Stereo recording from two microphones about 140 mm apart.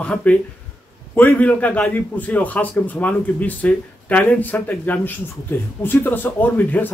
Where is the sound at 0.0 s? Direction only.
10° left (ahead or behind).